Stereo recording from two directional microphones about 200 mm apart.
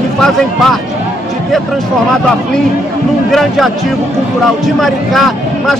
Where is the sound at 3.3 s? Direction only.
Centre (ahead or behind).